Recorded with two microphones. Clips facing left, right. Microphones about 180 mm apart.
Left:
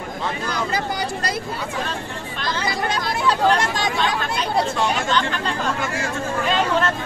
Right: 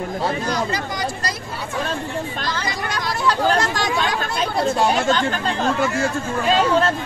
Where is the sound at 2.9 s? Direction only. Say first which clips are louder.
Right 2 dB; 25° left (ahead or behind).